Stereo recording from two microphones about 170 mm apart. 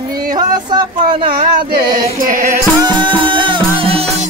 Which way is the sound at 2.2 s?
55° right (ahead or behind).